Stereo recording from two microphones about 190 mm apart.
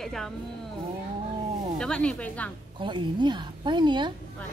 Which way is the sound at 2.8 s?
25° right (ahead or behind).